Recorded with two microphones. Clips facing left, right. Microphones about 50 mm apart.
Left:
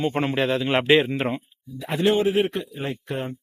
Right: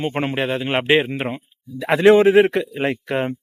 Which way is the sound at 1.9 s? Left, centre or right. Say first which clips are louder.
Right 8 dB; right.